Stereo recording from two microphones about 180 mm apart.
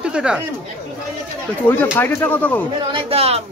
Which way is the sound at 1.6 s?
10° left (ahead or behind).